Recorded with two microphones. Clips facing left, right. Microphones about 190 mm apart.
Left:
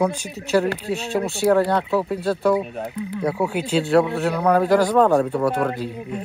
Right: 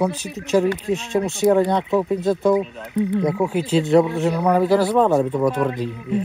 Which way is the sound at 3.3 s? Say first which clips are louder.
Right 2 dB; 10° left (ahead or behind).